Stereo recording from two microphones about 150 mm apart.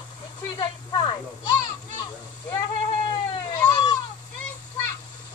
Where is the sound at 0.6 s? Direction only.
30° left (ahead or behind).